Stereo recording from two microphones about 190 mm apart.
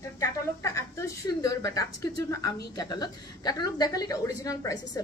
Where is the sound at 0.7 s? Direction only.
15° left (ahead or behind).